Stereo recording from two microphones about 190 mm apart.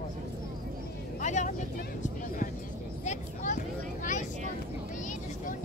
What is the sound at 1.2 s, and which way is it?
Vehicle, 40° left (ahead or behind).